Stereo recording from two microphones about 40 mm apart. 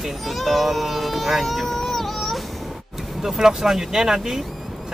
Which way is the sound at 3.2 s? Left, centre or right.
Centre.